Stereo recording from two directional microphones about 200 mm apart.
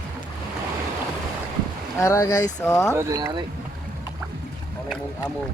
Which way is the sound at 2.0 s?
15° left (ahead or behind).